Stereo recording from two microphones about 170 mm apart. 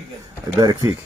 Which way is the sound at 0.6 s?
20° right (ahead or behind).